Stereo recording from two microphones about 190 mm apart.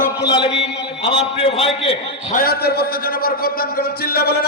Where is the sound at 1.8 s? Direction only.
40° left (ahead or behind).